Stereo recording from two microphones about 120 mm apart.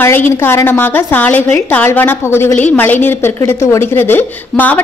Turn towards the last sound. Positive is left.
turn(degrees=15)  # may be behind; listen again after turning